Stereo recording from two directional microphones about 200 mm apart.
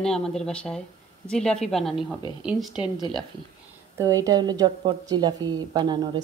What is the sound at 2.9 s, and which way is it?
A woman's voice, 20° right (ahead or behind).